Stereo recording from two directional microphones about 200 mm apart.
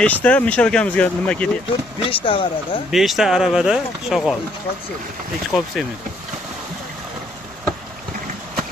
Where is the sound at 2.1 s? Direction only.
25° left (ahead or behind).